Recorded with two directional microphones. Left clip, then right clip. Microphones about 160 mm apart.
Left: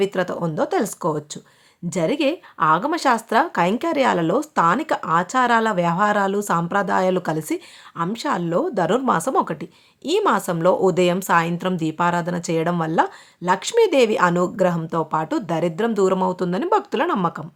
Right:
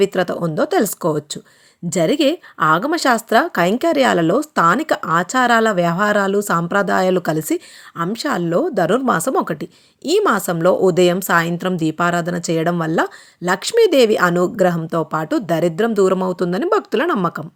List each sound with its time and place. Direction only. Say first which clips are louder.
0.0 s a woman's voice: right 4 dB; 25° right (ahead or behind)